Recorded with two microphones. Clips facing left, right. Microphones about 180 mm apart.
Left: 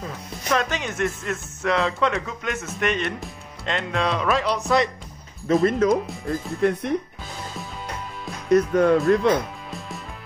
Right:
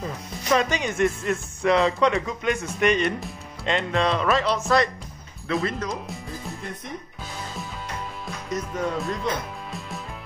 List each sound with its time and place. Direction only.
0.0 s speech: centre (ahead or behind)
5.5 s speech: 50° left (ahead or behind)
8.5 s speech: 65° left (ahead or behind)